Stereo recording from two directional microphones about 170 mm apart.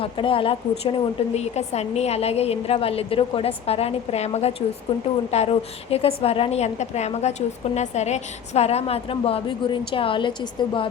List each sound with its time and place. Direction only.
0.0 s a woman's voice: 30° left (ahead or behind)